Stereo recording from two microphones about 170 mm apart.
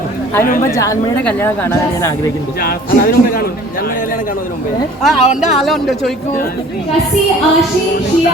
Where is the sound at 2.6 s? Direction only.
60° left (ahead or behind).